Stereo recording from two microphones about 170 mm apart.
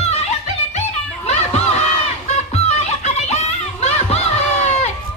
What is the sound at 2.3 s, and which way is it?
Music, 40° left (ahead or behind).